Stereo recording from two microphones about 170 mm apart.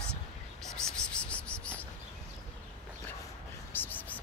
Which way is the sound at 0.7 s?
5° left (ahead or behind).